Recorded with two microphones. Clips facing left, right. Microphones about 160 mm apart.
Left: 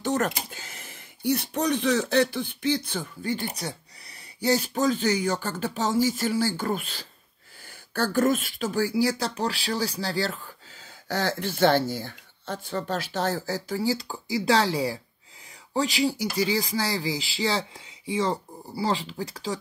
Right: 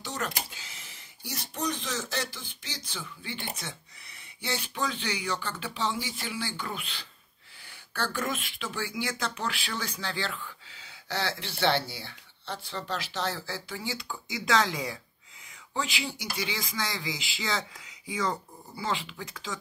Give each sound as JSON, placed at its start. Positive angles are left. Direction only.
{"t": 0.0, "sound": "speech", "side_deg": 50}